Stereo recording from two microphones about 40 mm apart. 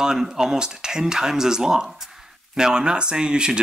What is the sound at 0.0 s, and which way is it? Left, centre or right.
Speech, centre.